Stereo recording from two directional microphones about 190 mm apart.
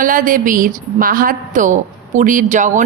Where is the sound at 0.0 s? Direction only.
45° right (ahead or behind).